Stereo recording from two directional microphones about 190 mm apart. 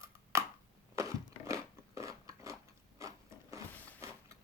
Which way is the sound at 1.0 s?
15° right (ahead or behind).